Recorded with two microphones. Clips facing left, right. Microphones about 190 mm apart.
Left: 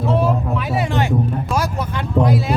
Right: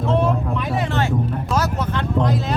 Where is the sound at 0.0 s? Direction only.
5° left (ahead or behind).